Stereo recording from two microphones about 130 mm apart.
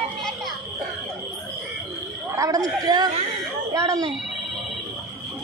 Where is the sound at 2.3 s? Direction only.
25° right (ahead or behind).